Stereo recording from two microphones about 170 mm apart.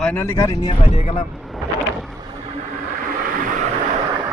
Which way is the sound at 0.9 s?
40° left (ahead or behind).